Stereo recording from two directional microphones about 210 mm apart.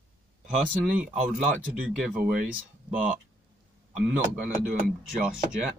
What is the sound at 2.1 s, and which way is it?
Speech, 40° right (ahead or behind).